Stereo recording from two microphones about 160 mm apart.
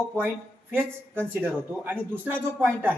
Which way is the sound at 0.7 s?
15° right (ahead or behind).